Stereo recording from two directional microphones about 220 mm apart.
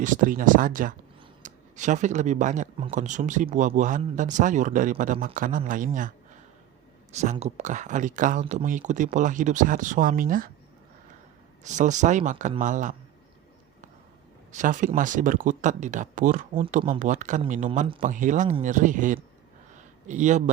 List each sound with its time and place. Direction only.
0.0 s speech: 35° right (ahead or behind)
7.1 s speech: 30° right (ahead or behind)
11.6 s speech: 35° right (ahead or behind)
14.5 s speech: 35° right (ahead or behind)
16.6 s speech: 25° right (ahead or behind)
18.0 s speech: 35° right (ahead or behind)
19.7 s a sound: 35° right (ahead or behind)